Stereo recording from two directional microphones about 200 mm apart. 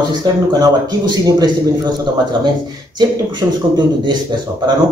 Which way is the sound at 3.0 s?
20° right (ahead or behind).